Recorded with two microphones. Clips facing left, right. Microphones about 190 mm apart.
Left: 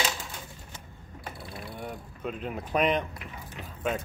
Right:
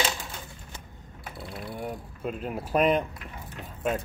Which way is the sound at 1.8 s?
5° right (ahead or behind).